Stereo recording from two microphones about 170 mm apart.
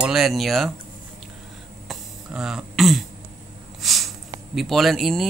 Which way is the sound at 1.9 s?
5° right (ahead or behind).